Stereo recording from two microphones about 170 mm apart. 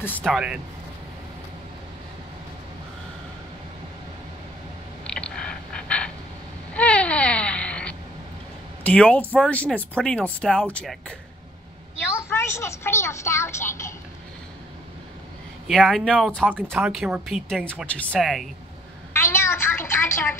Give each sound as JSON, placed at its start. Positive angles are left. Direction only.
{"t": 0.0, "sound": "speech", "side_deg": 10}
{"t": 0.3, "sound": "speech", "side_deg": -5}
{"t": 5.0, "sound": "a sound", "side_deg": 5}
{"t": 8.8, "sound": "speech", "side_deg": 5}
{"t": 12.3, "sound": "speech", "side_deg": 15}
{"t": 15.6, "sound": "speech", "side_deg": 0}
{"t": 19.1, "sound": "a sound", "side_deg": 15}